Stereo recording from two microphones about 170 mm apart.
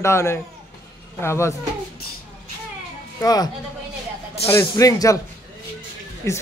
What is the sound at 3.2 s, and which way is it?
A man's voice, 20° left (ahead or behind).